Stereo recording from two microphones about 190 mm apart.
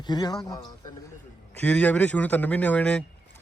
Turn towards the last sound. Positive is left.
turn(degrees=5)  # may be behind; listen again after turning